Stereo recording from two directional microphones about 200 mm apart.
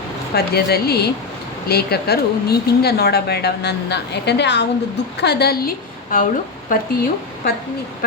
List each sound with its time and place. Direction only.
0.3 s speech: 50° left (ahead or behind)